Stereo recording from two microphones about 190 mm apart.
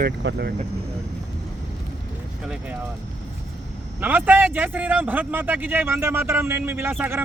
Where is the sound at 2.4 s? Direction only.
5° right (ahead or behind).